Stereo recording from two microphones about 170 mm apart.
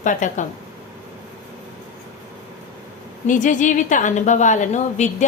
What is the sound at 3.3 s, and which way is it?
A woman's voice, 50° left (ahead or behind).